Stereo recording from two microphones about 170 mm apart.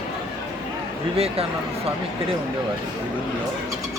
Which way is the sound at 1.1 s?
35° right (ahead or behind).